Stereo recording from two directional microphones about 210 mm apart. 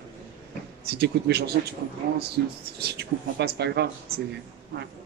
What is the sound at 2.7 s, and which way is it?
A man's voice, 50° right (ahead or behind).